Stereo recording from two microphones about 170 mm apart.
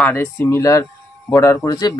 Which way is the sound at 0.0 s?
10° left (ahead or behind).